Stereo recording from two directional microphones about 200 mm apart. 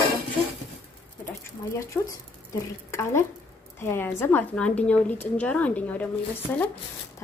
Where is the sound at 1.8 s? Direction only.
15° left (ahead or behind).